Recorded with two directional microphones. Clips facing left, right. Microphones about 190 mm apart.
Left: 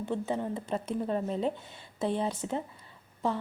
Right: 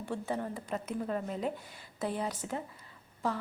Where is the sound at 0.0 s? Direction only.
20° left (ahead or behind).